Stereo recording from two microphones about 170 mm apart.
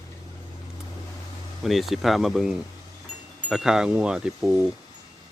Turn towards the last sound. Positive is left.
turn(degrees=-5)  # may be behind; listen again after turning